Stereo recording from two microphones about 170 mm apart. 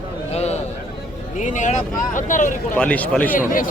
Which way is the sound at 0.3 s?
40° left (ahead or behind).